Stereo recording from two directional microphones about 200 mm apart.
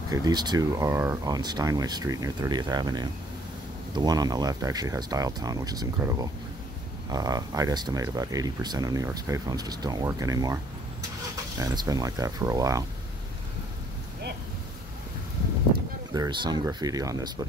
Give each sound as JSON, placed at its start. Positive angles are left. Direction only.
{"t": 0.1, "sound": "speech", "side_deg": -20}
{"t": 16.1, "sound": "speech", "side_deg": -20}